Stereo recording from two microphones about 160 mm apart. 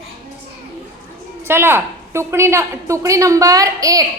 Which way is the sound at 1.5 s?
15° right (ahead or behind).